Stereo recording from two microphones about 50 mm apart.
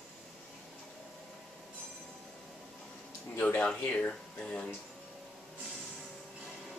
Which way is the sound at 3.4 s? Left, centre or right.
Left.